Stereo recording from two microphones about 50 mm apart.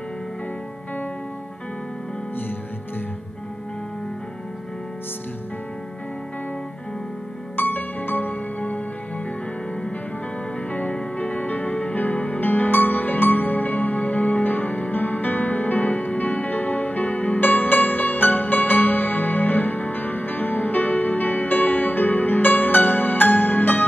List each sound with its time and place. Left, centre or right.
7.5 s music: left
10.7 s music: left